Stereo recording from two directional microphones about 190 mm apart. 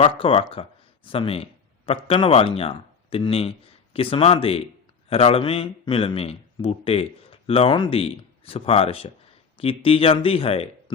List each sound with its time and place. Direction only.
0.0 s speech: 30° left (ahead or behind)